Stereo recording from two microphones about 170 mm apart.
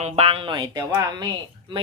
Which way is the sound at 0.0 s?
35° right (ahead or behind).